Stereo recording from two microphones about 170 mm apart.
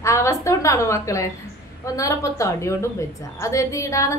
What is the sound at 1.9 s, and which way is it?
A woman's voice, 20° left (ahead or behind).